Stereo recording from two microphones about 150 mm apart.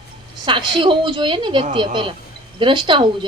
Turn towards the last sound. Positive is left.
turn(degrees=-30)  # may be behind; listen again after turning